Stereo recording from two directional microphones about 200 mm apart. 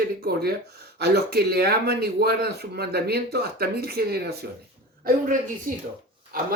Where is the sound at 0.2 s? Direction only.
50° right (ahead or behind).